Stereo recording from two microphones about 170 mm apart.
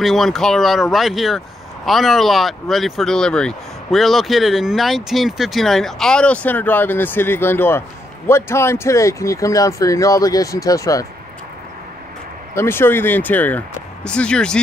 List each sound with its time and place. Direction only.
0.0 s speech: centre (ahead or behind); by 11.1 s 20° left (ahead or behind)
12.5 s speech: 15° left (ahead or behind)